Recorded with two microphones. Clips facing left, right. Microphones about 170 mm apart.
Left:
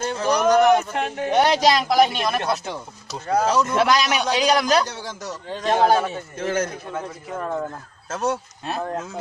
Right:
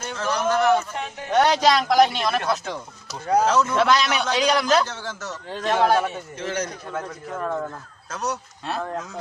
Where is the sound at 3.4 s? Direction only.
15° left (ahead or behind).